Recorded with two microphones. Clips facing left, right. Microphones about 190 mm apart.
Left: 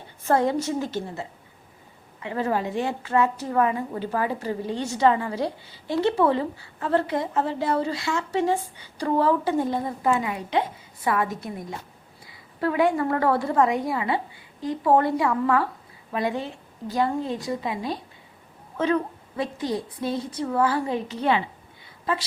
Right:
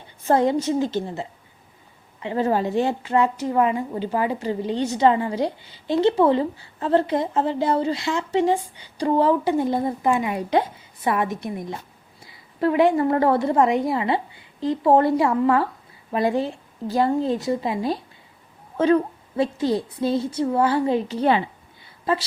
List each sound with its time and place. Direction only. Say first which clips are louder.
0.3 s a woman's voice: right 3 dB; 20° right (ahead or behind)
2.2 s a woman's voice: right 4 dB; 30° right (ahead or behind)
3.0 s a woman's voice: right 2 dB; 20° right (ahead or behind)